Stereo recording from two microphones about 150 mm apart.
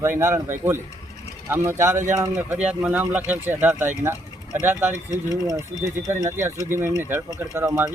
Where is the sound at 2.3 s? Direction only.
10° right (ahead or behind).